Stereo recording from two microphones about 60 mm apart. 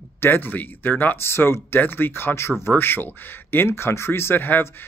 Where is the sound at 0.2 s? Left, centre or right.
Left.